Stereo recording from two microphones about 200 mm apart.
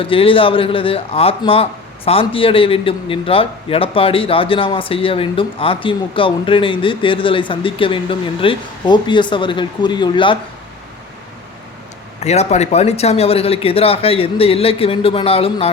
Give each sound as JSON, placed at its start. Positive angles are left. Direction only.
{"t": 0.0, "sound": "a man's voice", "side_deg": 25}
{"t": 12.2, "sound": "a man's voice", "side_deg": 35}